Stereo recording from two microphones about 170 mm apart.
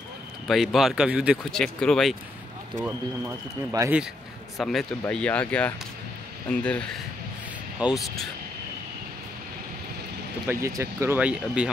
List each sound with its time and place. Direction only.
0.5 s speech: centre (ahead or behind)
2.8 s speech: 15° right (ahead or behind)
4.6 s speech: centre (ahead or behind)
10.5 s speech: 15° right (ahead or behind)